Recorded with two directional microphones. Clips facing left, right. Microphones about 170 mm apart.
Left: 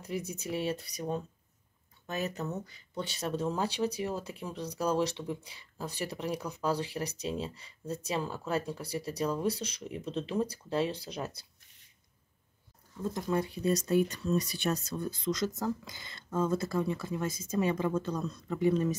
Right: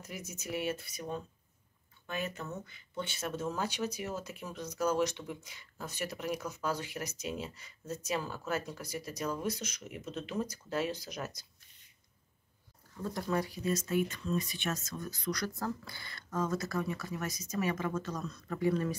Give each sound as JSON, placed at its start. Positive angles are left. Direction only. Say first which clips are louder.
{"t": 0.0, "sound": "speech", "louder": "left 7 dB", "side_deg": 30}
{"t": 13.0, "sound": "speech", "louder": "left 2 dB", "side_deg": 25}
{"t": 18.5, "sound": "speech", "louder": "left 3 dB", "side_deg": 20}